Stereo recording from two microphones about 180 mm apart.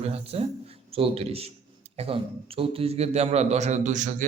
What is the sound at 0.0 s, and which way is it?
Speech, 35° right (ahead or behind).